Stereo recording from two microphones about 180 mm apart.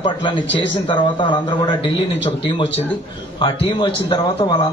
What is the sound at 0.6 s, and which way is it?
A man's voice, 25° left (ahead or behind).